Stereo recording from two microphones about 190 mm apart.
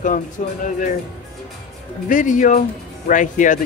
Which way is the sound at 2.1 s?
45° left (ahead or behind).